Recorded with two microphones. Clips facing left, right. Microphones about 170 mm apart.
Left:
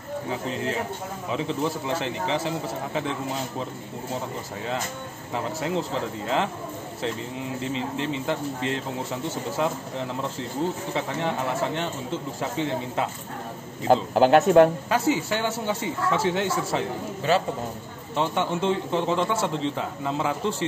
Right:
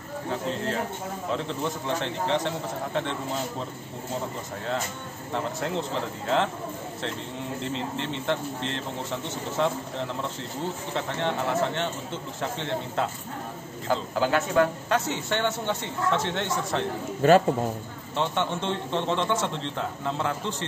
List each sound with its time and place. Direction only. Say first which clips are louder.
1.3 s speech: left 4 dB; 5° left (ahead or behind)
5.3 s speech: left 2 dB; 5° left (ahead or behind)
13.8 s a man's voice: left 7 dB; 55° left (ahead or behind)
14.9 s a man's voice: left 3 dB; 5° left (ahead or behind)
17.2 s a man's voice: right 5 dB; 50° right (ahead or behind)
18.1 s speech: left 2 dB; centre (ahead or behind)